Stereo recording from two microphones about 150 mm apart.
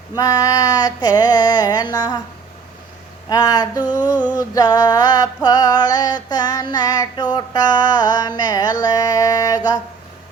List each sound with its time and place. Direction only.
0.2 s music: 25° left (ahead or behind)
3.2 s music: 25° left (ahead or behind)